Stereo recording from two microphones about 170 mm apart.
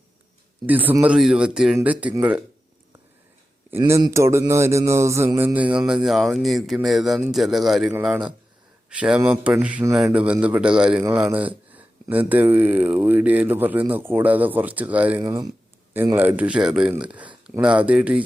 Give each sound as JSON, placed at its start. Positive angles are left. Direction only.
{"t": 0.7, "sound": "speech", "side_deg": -10}
{"t": 3.7, "sound": "speech", "side_deg": -15}
{"t": 15.2, "sound": "speech", "side_deg": -20}
{"t": 16.1, "sound": "speech", "side_deg": -10}